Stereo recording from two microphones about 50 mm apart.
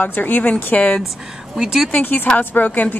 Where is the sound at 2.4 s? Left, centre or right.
Left.